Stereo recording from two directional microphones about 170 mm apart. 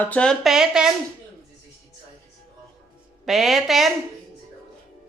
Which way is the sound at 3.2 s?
Centre (ahead or behind).